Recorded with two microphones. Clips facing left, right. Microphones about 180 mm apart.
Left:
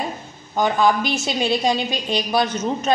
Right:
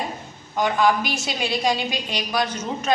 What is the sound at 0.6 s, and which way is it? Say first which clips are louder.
A woman's voice: left 2 dB; 25° left (ahead or behind).